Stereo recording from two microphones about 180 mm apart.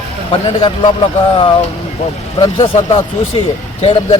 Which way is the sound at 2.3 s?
25° left (ahead or behind).